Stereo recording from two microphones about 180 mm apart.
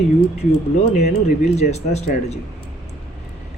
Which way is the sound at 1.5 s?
35° left (ahead or behind).